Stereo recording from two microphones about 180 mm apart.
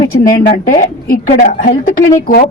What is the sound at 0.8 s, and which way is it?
Speech, 50° left (ahead or behind).